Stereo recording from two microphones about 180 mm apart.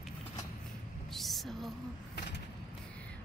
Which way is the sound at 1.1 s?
Centre (ahead or behind).